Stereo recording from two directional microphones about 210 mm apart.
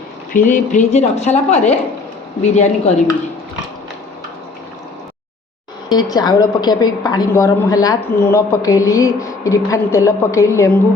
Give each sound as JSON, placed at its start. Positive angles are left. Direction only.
{"t": 0.3, "sound": "speech", "side_deg": 35}
{"t": 5.9, "sound": "a woman's voice", "side_deg": 20}